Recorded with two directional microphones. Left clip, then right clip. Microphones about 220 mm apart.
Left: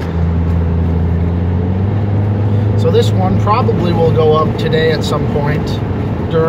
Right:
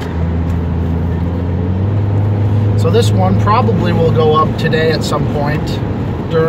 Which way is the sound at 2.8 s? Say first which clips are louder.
Even; 20° right (ahead or behind).